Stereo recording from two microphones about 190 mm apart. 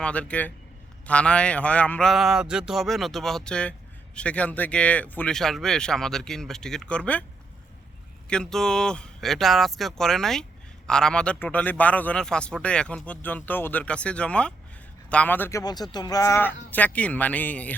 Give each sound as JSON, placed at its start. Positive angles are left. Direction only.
{"t": 0.0, "sound": "a man's voice", "side_deg": 5}
{"t": 8.3, "sound": "a man's voice", "side_deg": 5}